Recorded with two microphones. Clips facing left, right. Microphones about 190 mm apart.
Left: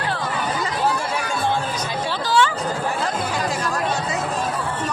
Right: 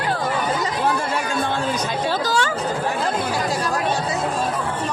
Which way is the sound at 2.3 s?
40° right (ahead or behind).